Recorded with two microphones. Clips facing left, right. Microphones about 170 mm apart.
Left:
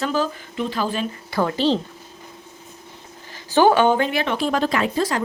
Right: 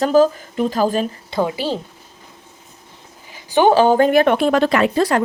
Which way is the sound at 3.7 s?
35° right (ahead or behind).